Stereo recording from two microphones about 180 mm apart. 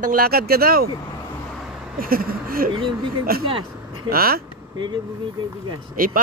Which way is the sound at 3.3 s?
55° right (ahead or behind).